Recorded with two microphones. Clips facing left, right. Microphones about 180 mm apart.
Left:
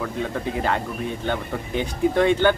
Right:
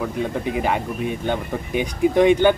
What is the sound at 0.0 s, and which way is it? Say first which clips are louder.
Speech: right 3 dB; 15° right (ahead or behind).